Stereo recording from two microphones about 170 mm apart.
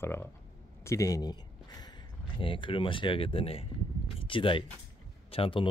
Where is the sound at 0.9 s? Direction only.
20° left (ahead or behind).